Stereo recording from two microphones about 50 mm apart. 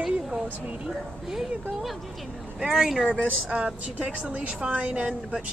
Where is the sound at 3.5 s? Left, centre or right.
Right.